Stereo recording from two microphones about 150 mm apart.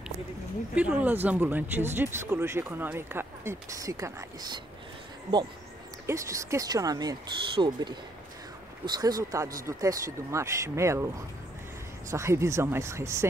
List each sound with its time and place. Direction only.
0.7 s speech: 10° right (ahead or behind)
6.0 s speech: 20° right (ahead or behind)
12.1 s speech: 20° right (ahead or behind)